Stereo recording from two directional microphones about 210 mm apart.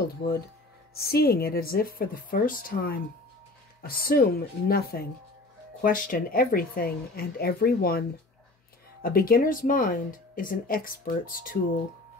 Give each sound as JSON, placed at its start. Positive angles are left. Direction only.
{"t": 0.9, "sound": "a woman's voice", "side_deg": 50}
{"t": 9.0, "sound": "speech", "side_deg": 45}